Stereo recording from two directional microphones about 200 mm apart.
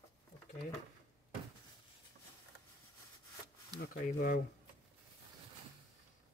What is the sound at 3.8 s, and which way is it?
Speech, 45° left (ahead or behind).